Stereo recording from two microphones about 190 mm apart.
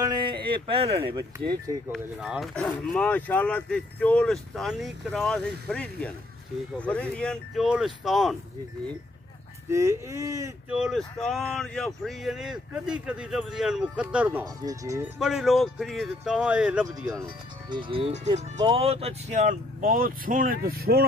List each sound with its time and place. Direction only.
0.0 s a sound: 25° right (ahead or behind)
1.0 s speech: 25° right (ahead or behind)
1.9 s speech: 5° right (ahead or behind)
9.7 s speech: 15° right (ahead or behind)
10.7 s speech: centre (ahead or behind)
14.4 s speech: 20° right (ahead or behind)
15.1 s speech: centre (ahead or behind)
17.2 s speech: 25° right (ahead or behind); by 21.0 s 55° right (ahead or behind)